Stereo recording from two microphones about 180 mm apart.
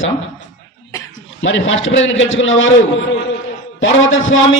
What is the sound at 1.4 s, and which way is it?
A man's voice, 90° left.